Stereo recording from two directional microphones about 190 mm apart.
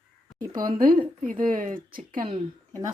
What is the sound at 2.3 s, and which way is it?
Speech, 30° right (ahead or behind).